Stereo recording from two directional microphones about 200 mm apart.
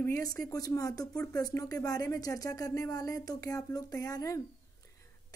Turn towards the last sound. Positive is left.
turn(degrees=15)  # may be behind; listen again after turning